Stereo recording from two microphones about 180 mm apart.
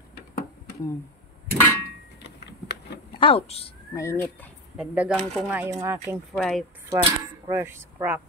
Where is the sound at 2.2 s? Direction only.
70° left (ahead or behind).